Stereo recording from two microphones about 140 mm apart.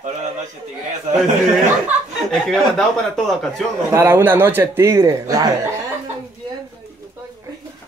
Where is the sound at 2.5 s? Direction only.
Centre (ahead or behind).